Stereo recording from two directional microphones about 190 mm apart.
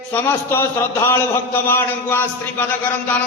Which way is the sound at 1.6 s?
10° left (ahead or behind).